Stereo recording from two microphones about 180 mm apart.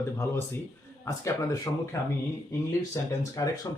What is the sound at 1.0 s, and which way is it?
Speech, 20° left (ahead or behind).